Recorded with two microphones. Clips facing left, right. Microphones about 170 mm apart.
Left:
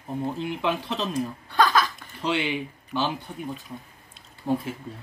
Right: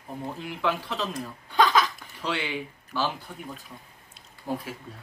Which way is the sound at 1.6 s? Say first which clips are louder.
Even; 15° right (ahead or behind).